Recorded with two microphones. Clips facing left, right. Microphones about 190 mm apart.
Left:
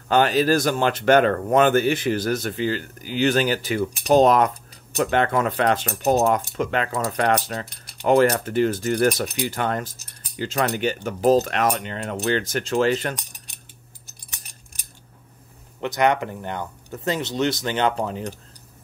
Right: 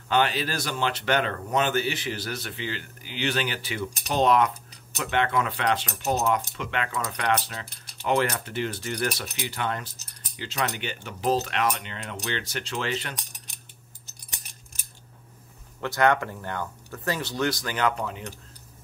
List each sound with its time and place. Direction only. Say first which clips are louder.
0.1 s speech: left 7 dB; 45° left (ahead or behind)
15.8 s speech: left 2 dB; 20° left (ahead or behind); by 18.3 s 35° left (ahead or behind)